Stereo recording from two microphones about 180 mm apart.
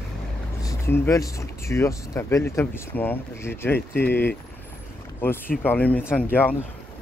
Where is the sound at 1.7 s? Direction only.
15° left (ahead or behind).